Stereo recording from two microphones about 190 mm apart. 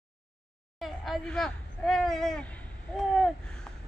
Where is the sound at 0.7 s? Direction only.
Centre (ahead or behind).